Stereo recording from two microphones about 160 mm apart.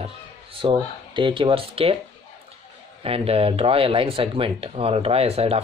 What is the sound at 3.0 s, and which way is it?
Speech, 35° right (ahead or behind).